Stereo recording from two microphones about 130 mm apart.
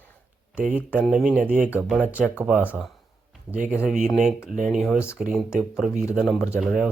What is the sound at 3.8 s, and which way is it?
Speech, 5° right (ahead or behind).